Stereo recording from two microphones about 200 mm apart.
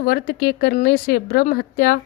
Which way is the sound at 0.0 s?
50° left (ahead or behind).